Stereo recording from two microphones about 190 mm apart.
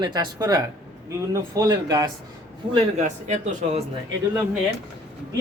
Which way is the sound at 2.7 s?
40° right (ahead or behind).